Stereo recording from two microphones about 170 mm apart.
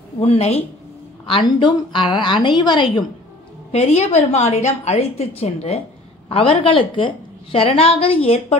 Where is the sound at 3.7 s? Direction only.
40° left (ahead or behind).